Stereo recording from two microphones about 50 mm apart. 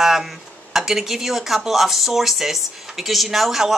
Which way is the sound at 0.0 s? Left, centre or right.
Centre.